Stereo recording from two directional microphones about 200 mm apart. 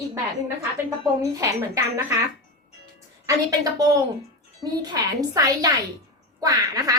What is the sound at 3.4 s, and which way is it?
A woman's voice, 15° right (ahead or behind).